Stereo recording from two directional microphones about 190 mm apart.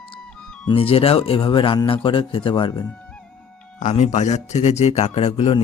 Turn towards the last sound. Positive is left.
turn(degrees=30)  # may be behind; listen again after turning